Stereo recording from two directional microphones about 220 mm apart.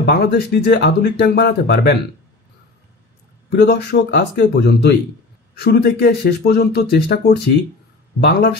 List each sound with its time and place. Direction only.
0.0 s speech: 45° left (ahead or behind)
3.4 s speech: 50° left (ahead or behind)